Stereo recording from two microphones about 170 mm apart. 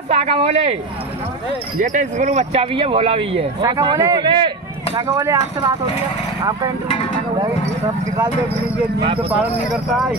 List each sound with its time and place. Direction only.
0.1 s speech: 40° right (ahead or behind)
1.8 s speech: 50° right (ahead or behind)
3.6 s a man's voice: 20° right (ahead or behind)
5.0 s speech: 15° right (ahead or behind)
9.4 s speech: centre (ahead or behind)